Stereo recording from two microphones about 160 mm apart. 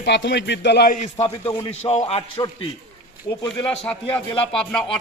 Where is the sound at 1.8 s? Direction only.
45° left (ahead or behind).